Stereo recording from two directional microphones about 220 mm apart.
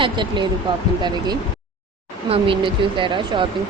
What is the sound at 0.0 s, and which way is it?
Speech, 20° right (ahead or behind).